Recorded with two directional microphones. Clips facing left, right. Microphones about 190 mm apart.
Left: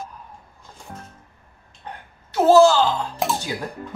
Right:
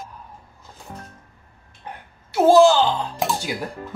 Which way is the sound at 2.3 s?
15° right (ahead or behind).